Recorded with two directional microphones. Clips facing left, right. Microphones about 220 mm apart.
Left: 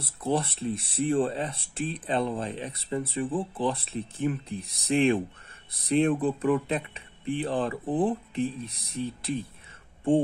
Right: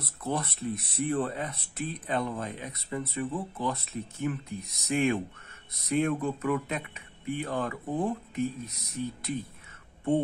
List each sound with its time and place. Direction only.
0.0 s speech: 30° left (ahead or behind)